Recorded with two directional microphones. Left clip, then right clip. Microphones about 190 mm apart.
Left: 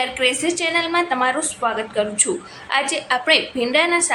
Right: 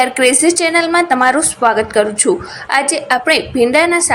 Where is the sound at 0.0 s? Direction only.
30° right (ahead or behind).